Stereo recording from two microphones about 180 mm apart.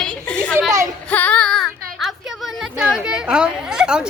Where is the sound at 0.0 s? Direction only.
5° left (ahead or behind).